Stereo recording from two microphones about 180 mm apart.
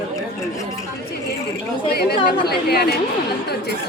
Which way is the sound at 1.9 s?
60° left (ahead or behind).